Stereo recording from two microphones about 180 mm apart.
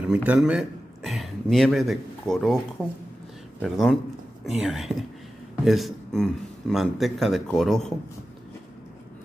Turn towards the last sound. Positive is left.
turn(degrees=0)  # may be behind; listen again after turning